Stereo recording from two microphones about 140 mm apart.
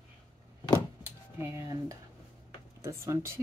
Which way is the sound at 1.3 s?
20° right (ahead or behind).